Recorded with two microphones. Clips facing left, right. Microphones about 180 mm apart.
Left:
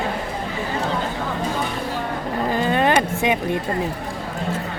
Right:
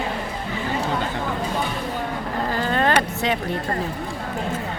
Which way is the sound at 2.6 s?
15° left (ahead or behind).